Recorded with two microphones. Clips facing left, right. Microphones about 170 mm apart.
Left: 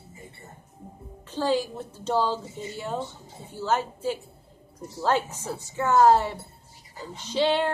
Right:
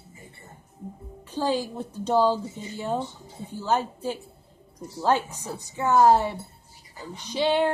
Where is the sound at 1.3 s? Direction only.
15° right (ahead or behind).